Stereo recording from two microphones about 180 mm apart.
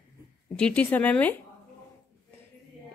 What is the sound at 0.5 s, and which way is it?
Speech, 5° left (ahead or behind).